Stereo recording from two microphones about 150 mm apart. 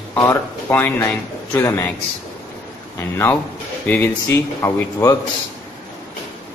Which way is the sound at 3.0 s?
15° left (ahead or behind).